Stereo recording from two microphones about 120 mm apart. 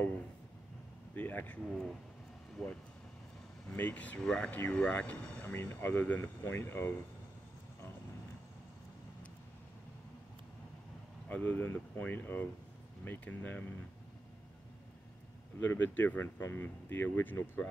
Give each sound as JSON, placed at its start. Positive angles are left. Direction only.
{"t": 1.1, "sound": "speech", "side_deg": 15}
{"t": 2.6, "sound": "speech", "side_deg": 0}
{"t": 3.7, "sound": "speech", "side_deg": 15}
{"t": 11.2, "sound": "speech", "side_deg": 15}
{"t": 15.6, "sound": "speech", "side_deg": 15}